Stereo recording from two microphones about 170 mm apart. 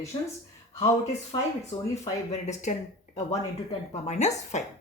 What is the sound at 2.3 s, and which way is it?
Speech, 45° left (ahead or behind).